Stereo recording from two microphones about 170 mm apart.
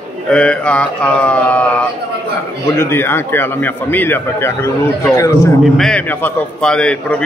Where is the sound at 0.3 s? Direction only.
5° left (ahead or behind).